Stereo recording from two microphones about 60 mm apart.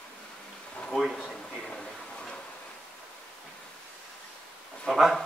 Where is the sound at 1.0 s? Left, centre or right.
Centre.